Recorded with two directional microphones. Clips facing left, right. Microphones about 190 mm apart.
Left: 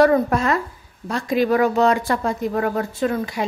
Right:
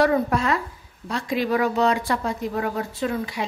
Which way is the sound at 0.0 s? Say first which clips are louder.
Left 4 dB; 45° left (ahead or behind).